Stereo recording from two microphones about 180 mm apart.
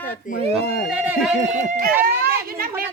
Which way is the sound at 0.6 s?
60° left (ahead or behind).